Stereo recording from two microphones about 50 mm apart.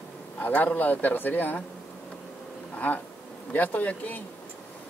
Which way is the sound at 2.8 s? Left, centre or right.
Left.